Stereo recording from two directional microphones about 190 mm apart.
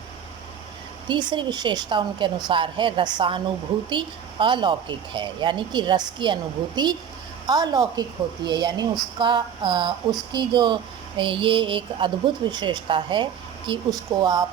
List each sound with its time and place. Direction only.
1.0 s speech: 25° right (ahead or behind)